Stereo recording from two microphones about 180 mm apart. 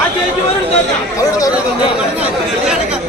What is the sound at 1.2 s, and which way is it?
Chatter, 20° left (ahead or behind).